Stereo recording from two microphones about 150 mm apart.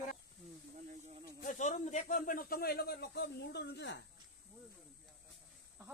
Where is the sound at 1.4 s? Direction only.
55° left (ahead or behind); by 3.8 s 90° left.